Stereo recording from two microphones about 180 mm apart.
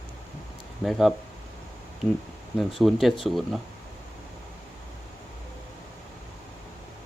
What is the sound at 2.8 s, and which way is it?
Speech, centre (ahead or behind).